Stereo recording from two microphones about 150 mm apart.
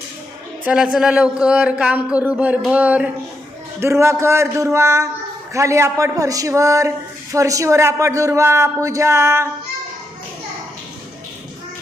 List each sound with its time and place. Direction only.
0.6 s a man's voice: 5° right (ahead or behind)